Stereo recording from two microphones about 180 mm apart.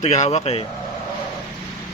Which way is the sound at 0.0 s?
35° left (ahead or behind).